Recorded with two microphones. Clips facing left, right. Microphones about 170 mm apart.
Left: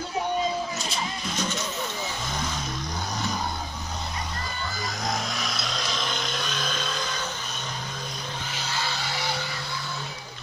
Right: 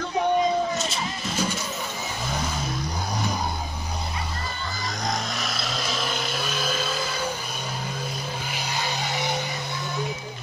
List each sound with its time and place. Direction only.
0.7 s vehicle: centre (ahead or behind)
5.0 s vehicle: centre (ahead or behind)
8.5 s music: 15° right (ahead or behind)